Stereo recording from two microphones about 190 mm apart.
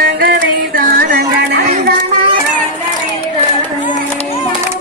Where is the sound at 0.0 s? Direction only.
50° right (ahead or behind).